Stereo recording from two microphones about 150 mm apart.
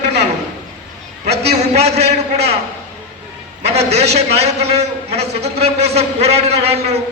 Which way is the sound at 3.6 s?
45° right (ahead or behind).